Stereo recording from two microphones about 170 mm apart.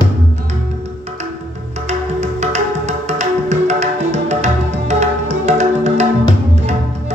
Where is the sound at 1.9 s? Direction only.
40° right (ahead or behind).